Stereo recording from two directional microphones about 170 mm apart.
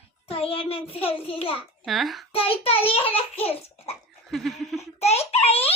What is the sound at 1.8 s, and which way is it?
Speech, centre (ahead or behind).